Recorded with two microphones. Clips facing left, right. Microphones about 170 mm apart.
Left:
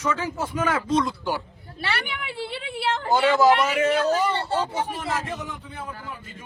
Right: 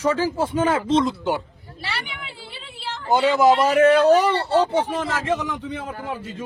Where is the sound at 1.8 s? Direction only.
60° left (ahead or behind).